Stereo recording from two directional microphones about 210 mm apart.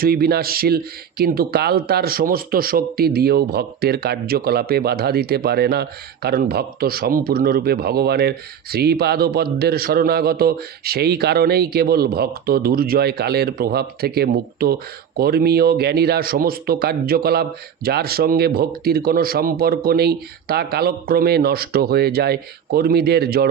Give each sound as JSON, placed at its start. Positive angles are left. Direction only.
{"t": 0.0, "sound": "a man's voice", "side_deg": -45}